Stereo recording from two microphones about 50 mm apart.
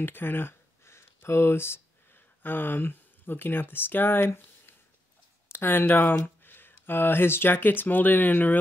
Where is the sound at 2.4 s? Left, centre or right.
Left.